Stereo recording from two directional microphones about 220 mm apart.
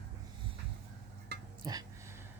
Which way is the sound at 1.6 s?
20° right (ahead or behind).